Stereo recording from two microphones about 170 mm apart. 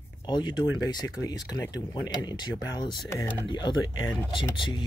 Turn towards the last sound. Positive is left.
turn(degrees=30)  # may be behind; listen again after turning